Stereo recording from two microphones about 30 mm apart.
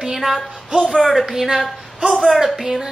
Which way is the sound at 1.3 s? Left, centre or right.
Centre.